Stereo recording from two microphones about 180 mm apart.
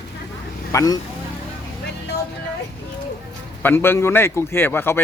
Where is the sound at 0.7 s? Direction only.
20° left (ahead or behind).